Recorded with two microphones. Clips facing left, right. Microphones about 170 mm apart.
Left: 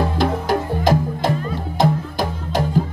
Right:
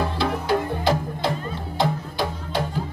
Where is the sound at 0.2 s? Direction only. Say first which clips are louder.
Left 1 dB; 45° left (ahead or behind).